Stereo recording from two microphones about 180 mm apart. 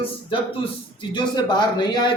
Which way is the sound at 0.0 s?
30° left (ahead or behind).